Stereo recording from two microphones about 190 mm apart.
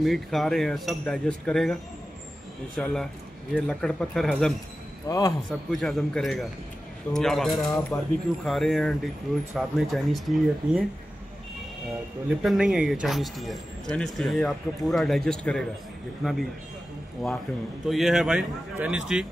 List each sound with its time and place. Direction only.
0.0 s speech: centre (ahead or behind)
2.8 s speech: 5° left (ahead or behind)
5.0 s a man's voice: 20° left (ahead or behind)
5.5 s speech: centre (ahead or behind)
7.5 s speech: 20° left (ahead or behind)
8.5 s speech: centre (ahead or behind)
12.4 s speech: 5° right (ahead or behind)